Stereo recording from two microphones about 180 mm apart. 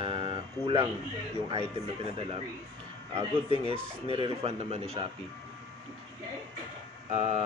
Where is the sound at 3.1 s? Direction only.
30° right (ahead or behind).